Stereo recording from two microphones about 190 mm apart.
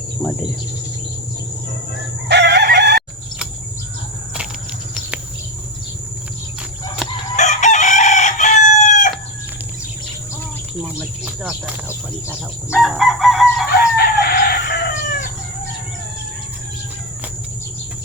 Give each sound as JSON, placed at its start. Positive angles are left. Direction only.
{"t": 2.3, "sound": "crowing", "side_deg": -60}
{"t": 7.3, "sound": "chicken", "side_deg": 40}
{"t": 11.4, "sound": "chicken", "side_deg": -5}
{"t": 13.9, "sound": "chicken", "side_deg": 55}